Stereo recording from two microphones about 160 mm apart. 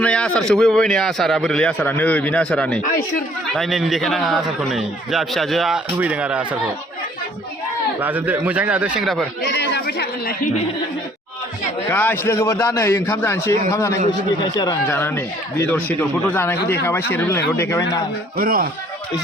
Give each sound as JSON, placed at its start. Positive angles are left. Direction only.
{"t": 0.0, "sound": "a man's voice", "side_deg": 5}
{"t": 8.0, "sound": "a man's voice", "side_deg": -10}
{"t": 9.4, "sound": "speech", "side_deg": 90}
{"t": 11.9, "sound": "speech", "side_deg": 15}
{"t": 14.8, "sound": "speech", "side_deg": 15}
{"t": 18.3, "sound": "speech", "side_deg": -65}